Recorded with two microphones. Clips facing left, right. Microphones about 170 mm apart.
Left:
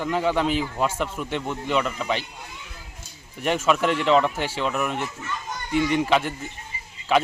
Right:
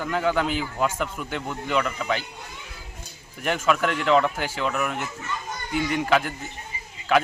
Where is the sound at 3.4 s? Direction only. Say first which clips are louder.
Left 2 dB; centre (ahead or behind).